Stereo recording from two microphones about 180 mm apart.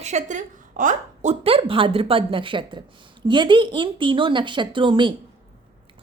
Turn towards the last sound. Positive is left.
turn(degrees=-25)  # may be behind; listen again after turning